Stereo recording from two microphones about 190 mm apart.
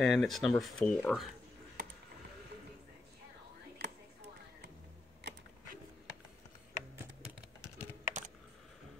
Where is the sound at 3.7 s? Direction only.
65° right (ahead or behind).